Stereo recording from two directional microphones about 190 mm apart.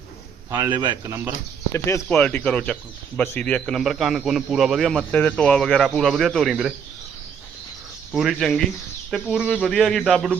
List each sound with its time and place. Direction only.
0.8 s speech: 20° right (ahead or behind)
1.7 s speech: 15° left (ahead or behind); by 6.7 s 5° right (ahead or behind)
8.1 s speech: centre (ahead or behind)